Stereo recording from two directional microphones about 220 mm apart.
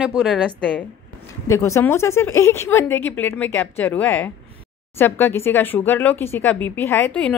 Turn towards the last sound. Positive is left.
turn(degrees=10)  # may be behind; listen again after turning